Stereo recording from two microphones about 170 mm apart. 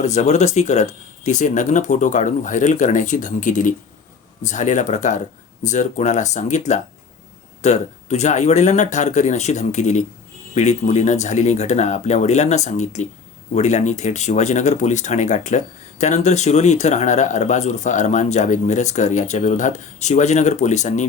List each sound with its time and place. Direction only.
0.0 s speech: 40° left (ahead or behind)